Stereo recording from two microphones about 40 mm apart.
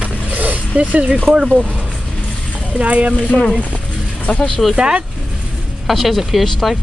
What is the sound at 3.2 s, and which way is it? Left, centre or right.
Speech, left.